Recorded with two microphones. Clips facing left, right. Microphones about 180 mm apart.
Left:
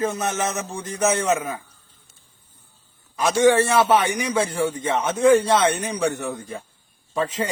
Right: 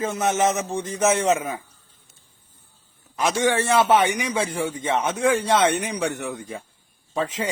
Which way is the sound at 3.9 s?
20° right (ahead or behind).